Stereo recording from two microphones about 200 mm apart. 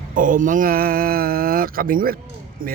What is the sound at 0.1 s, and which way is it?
Speech, 40° right (ahead or behind).